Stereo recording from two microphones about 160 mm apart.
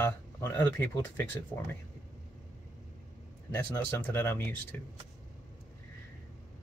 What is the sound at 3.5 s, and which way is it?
Speech, 15° left (ahead or behind).